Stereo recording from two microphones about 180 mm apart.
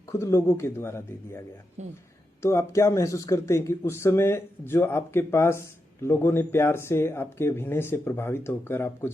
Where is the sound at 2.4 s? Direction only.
15° left (ahead or behind).